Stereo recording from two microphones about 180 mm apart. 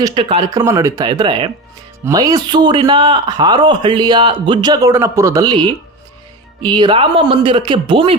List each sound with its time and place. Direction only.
0.0 s a man's voice: 30° right (ahead or behind)
0.6 s a man's voice: 15° right (ahead or behind)
6.7 s a man's voice: 25° right (ahead or behind)